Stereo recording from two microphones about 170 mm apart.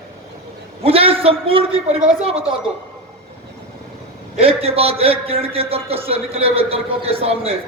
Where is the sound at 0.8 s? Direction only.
35° right (ahead or behind).